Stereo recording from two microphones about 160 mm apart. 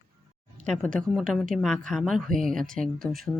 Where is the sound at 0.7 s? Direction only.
5° left (ahead or behind).